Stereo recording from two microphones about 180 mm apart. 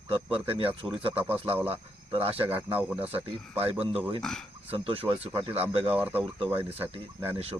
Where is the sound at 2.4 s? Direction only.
10° right (ahead or behind).